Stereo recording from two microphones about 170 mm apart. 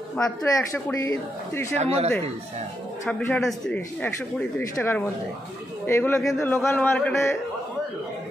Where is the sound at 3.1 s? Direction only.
10° left (ahead or behind).